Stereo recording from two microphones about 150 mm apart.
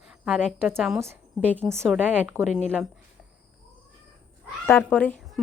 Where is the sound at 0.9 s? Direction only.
15° right (ahead or behind).